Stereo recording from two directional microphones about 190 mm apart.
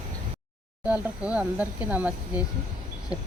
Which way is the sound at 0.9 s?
5° right (ahead or behind).